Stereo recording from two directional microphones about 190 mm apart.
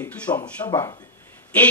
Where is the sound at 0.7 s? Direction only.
20° left (ahead or behind).